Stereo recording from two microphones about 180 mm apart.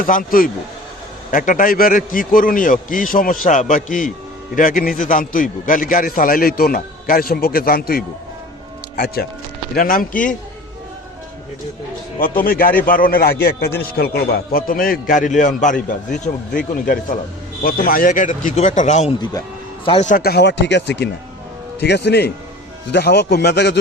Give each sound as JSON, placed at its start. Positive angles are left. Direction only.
{"t": 0.0, "sound": "a man's voice", "side_deg": 50}
{"t": 9.7, "sound": "a man's voice", "side_deg": 50}
{"t": 12.2, "sound": "a man's voice", "side_deg": 50}
{"t": 17.6, "sound": "a man's voice", "side_deg": 55}
{"t": 19.2, "sound": "speech", "side_deg": 20}
{"t": 20.1, "sound": "a man's voice", "side_deg": 55}